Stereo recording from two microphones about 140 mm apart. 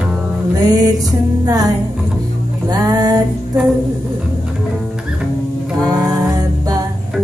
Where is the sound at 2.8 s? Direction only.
30° right (ahead or behind).